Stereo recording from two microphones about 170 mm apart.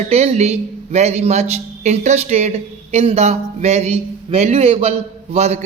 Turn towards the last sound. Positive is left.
turn(degrees=-40)  # may be behind; listen again after turning